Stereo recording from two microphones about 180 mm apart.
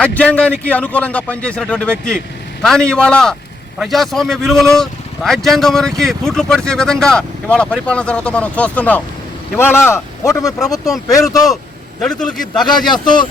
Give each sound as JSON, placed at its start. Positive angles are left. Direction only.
{"t": 0.0, "sound": "a man's voice", "side_deg": 5}
{"t": 11.9, "sound": "speech", "side_deg": 5}
{"t": 12.6, "sound": "a man's voice", "side_deg": 25}